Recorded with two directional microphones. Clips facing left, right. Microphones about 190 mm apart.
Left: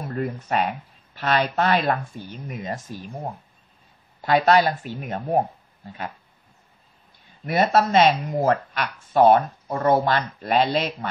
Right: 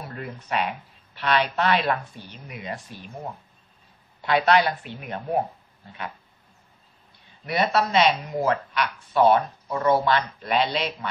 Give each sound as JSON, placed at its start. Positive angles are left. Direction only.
{"t": 0.1, "sound": "speech", "side_deg": 45}
{"t": 4.2, "sound": "speech", "side_deg": 40}
{"t": 7.4, "sound": "speech", "side_deg": 50}